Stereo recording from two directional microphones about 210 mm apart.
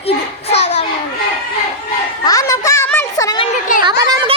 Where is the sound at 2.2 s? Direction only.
15° left (ahead or behind).